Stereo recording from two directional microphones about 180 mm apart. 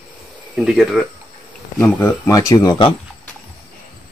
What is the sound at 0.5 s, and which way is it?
Speech, 5° right (ahead or behind).